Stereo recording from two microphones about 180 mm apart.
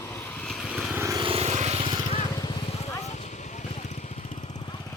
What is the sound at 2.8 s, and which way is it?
Vehicle, 40° left (ahead or behind).